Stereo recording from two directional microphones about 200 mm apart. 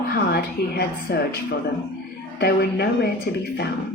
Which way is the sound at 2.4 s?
55° left (ahead or behind).